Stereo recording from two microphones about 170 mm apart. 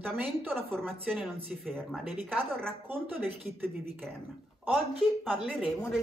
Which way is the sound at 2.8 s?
10° right (ahead or behind).